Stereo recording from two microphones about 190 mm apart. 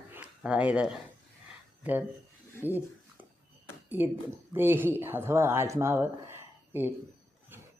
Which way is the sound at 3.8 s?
10° right (ahead or behind).